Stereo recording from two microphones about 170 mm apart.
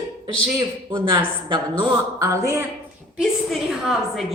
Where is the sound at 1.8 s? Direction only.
20° right (ahead or behind).